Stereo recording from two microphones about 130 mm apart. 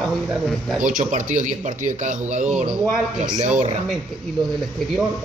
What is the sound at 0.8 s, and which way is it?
Speech, 90° right.